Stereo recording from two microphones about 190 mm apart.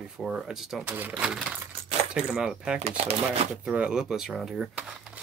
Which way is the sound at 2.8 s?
35° right (ahead or behind).